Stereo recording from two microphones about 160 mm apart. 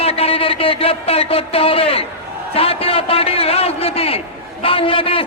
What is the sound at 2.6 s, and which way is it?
A man's voice, 35° left (ahead or behind).